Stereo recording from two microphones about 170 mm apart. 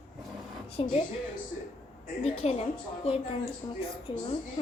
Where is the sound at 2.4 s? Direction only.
40° left (ahead or behind).